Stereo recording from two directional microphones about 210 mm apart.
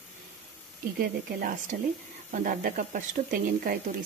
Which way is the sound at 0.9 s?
40° right (ahead or behind).